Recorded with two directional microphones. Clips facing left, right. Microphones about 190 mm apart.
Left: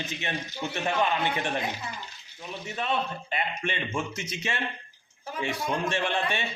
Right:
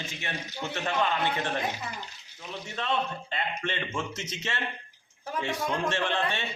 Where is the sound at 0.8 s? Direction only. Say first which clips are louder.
Left 1 dB; 15° left (ahead or behind).